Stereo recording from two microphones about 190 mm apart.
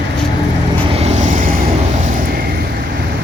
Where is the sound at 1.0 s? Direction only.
35° right (ahead or behind).